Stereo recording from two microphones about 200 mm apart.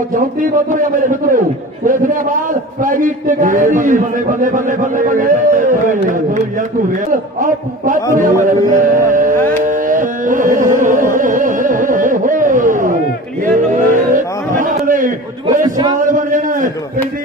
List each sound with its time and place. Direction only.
0.1 s a man's voice: 40° right (ahead or behind)
9.6 s carnatic music: 40° right (ahead or behind)
13.5 s a sound: 40° right (ahead or behind)